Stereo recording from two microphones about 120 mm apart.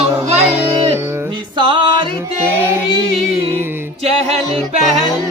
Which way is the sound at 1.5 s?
40° right (ahead or behind).